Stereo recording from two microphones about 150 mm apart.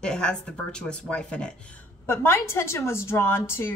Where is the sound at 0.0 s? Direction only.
5° left (ahead or behind).